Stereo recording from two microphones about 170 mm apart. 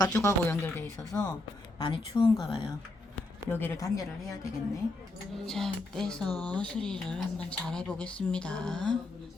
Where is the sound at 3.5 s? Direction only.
10° left (ahead or behind).